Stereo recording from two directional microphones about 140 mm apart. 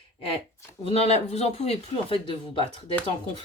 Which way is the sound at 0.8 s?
45° left (ahead or behind).